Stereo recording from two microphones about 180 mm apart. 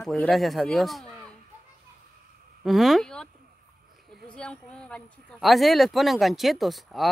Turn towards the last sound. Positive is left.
turn(degrees=0)  # may be behind; listen again after turning